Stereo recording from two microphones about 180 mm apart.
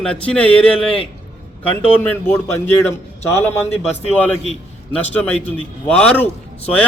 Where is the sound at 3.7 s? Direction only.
35° left (ahead or behind).